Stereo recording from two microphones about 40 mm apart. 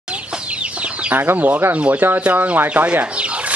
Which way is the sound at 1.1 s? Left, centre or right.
Right.